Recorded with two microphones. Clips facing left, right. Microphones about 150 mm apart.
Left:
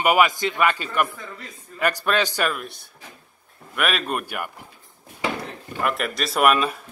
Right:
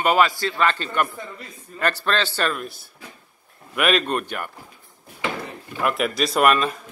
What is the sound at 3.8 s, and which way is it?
Speech, centre (ahead or behind).